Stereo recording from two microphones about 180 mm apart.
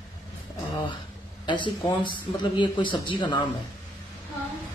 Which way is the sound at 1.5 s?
25° left (ahead or behind).